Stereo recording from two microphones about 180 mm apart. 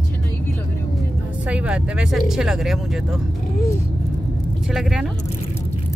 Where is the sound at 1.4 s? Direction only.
5° right (ahead or behind).